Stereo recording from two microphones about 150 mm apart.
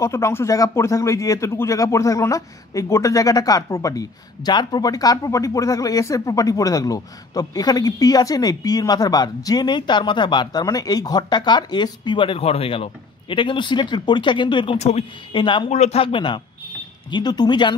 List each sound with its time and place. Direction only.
0.0 s speech: 20° left (ahead or behind)
14.8 s speech: 45° left (ahead or behind)
15.3 s speech: 30° left (ahead or behind)
15.7 s speech: 45° left (ahead or behind); by 17.7 s 30° left (ahead or behind)